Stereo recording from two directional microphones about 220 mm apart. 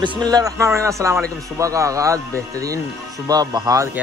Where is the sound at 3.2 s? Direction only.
15° right (ahead or behind).